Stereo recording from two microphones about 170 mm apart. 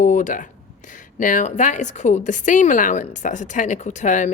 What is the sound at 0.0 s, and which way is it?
Speech, 50° left (ahead or behind).